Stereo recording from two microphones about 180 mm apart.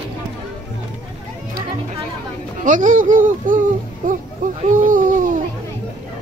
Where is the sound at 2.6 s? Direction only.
45° right (ahead or behind).